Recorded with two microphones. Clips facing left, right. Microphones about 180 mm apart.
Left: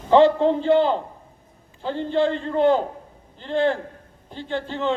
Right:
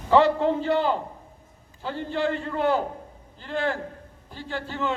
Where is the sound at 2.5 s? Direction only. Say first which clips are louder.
Left 5 dB; 20° left (ahead or behind).